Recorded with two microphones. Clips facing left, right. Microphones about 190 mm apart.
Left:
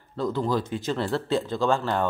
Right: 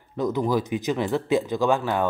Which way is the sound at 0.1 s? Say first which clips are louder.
Right 2 dB; 15° right (ahead or behind).